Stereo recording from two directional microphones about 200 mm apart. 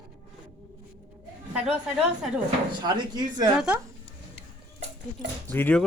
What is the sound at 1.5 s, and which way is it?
Speech, 5° right (ahead or behind).